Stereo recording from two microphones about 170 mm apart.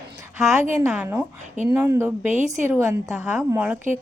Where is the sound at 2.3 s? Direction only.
45° right (ahead or behind).